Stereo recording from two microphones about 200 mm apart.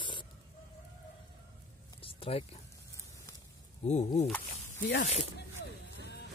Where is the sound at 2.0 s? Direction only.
30° left (ahead or behind).